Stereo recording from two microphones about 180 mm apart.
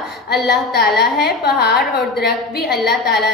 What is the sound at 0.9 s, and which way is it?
A woman's voice, 60° left (ahead or behind).